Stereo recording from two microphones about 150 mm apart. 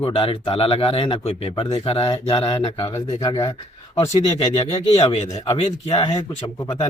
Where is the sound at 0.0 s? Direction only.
35° left (ahead or behind).